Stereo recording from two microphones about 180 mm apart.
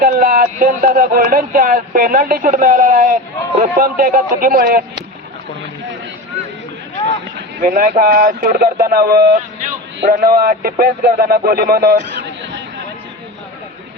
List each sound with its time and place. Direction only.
0.0 s speech: 55° right (ahead or behind)
7.6 s speech: 45° right (ahead or behind)